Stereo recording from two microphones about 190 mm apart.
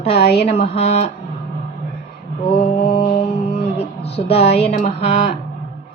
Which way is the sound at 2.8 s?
55° left (ahead or behind).